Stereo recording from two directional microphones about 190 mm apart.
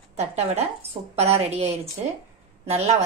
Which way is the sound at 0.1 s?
35° right (ahead or behind).